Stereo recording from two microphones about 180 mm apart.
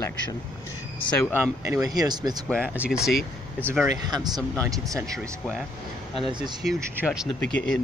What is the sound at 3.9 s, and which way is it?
Speech, 20° right (ahead or behind).